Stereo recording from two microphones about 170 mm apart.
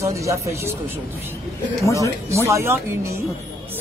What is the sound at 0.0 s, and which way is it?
Speech, 20° right (ahead or behind).